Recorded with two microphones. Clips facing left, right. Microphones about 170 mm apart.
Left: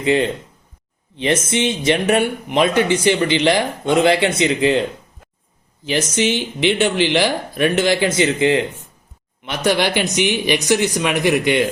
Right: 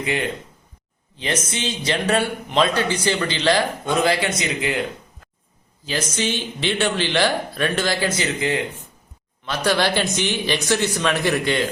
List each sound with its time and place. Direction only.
0.0 s speech: 30° left (ahead or behind)
6.1 s speech: 15° left (ahead or behind)
9.6 s speech: 20° left (ahead or behind)